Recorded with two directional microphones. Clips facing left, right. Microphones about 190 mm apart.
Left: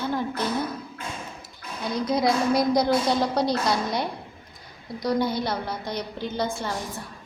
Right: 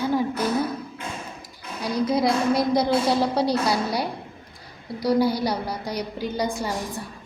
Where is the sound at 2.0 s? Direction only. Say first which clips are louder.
Right 1 dB; 5° right (ahead or behind).